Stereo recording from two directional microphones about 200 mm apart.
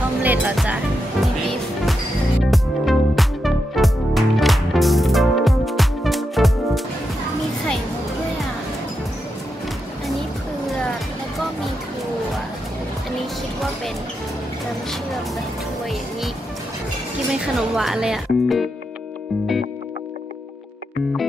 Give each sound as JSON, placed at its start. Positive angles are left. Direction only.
{"t": 0.2, "sound": "music", "side_deg": -10}
{"t": 2.4, "sound": "music", "side_deg": 0}
{"t": 17.6, "sound": "music", "side_deg": 0}